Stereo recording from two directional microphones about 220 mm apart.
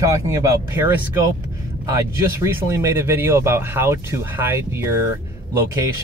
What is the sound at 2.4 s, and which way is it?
Speech, 15° right (ahead or behind).